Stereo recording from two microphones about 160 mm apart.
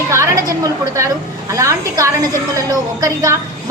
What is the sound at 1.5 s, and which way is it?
A woman's voice, 20° right (ahead or behind).